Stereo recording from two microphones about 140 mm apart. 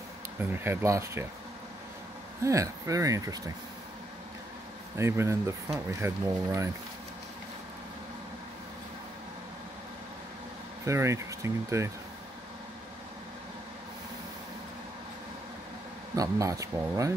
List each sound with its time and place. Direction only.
0.4 s speech: 15° right (ahead or behind)
2.4 s speech: 20° right (ahead or behind)
4.9 s speech: 20° right (ahead or behind)
10.9 s speech: 20° right (ahead or behind)
16.2 s speech: 25° right (ahead or behind)